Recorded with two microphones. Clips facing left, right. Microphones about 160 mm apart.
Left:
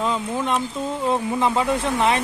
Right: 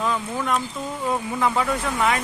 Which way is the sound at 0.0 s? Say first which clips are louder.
Left 2 dB; 20° left (ahead or behind).